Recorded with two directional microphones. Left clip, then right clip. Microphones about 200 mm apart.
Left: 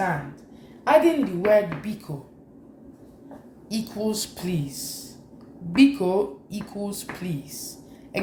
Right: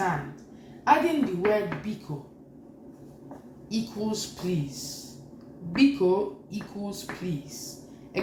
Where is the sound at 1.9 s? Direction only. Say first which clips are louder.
Left 2 dB; 55° left (ahead or behind).